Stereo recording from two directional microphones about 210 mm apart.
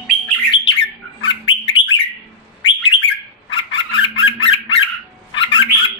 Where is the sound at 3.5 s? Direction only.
25° left (ahead or behind).